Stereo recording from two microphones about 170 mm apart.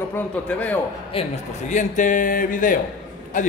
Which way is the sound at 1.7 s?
45° left (ahead or behind).